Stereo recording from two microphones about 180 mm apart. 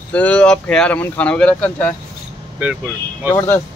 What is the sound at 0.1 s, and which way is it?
Speech, 5° left (ahead or behind).